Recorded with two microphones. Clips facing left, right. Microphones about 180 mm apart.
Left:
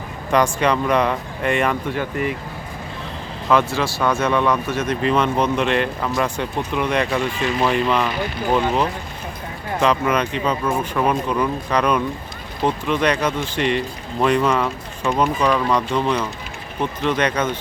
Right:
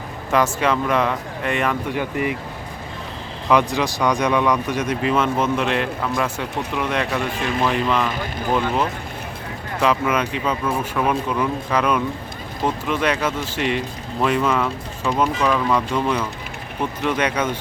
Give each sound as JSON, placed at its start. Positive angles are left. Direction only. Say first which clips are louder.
{"t": 0.3, "sound": "speech", "louder": "left 1 dB", "side_deg": -5}
{"t": 2.0, "sound": "speech", "louder": "even", "side_deg": -15}
{"t": 3.5, "sound": "speech", "louder": "even", "side_deg": -15}